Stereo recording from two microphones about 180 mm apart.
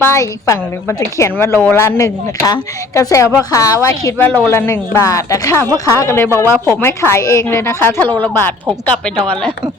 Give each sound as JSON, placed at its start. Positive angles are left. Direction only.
{"t": 0.1, "sound": "a woman's voice", "side_deg": 15}